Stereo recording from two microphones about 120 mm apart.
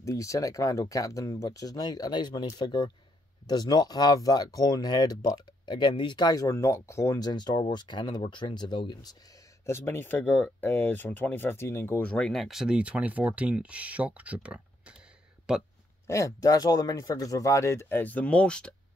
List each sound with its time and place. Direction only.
0.0 s speech: 25° left (ahead or behind)
9.7 s speech: 20° left (ahead or behind); by 15.6 s 5° right (ahead or behind)
16.1 s speech: 25° left (ahead or behind); by 18.8 s 10° left (ahead or behind)